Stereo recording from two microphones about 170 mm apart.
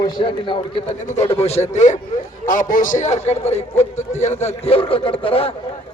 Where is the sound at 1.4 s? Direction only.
40° left (ahead or behind).